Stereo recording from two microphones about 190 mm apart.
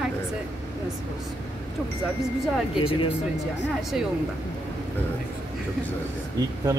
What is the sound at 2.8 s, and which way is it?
Speech, 30° left (ahead or behind).